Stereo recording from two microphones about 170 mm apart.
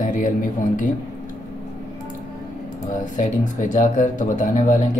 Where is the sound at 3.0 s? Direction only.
50° left (ahead or behind).